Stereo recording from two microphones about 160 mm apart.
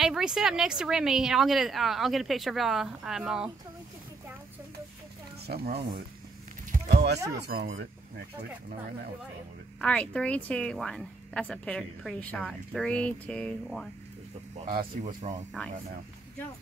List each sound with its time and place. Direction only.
0.0 s speech: 5° right (ahead or behind)
5.5 s speech: 80° right
6.7 s a sound: 65° right (ahead or behind)
7.5 s speech: 65° right (ahead or behind)
9.8 s speech: 5° left (ahead or behind)
14.7 s speech: 55° right (ahead or behind)